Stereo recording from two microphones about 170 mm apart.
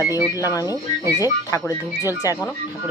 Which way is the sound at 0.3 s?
20° left (ahead or behind).